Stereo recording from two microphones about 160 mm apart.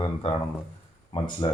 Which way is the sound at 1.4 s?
30° left (ahead or behind).